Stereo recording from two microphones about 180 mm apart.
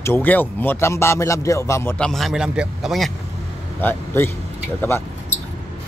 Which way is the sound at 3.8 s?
10° left (ahead or behind).